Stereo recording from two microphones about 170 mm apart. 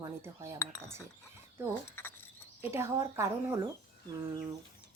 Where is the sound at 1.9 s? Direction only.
15° left (ahead or behind).